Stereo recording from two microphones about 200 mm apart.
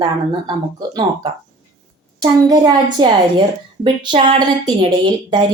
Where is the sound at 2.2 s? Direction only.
20° right (ahead or behind).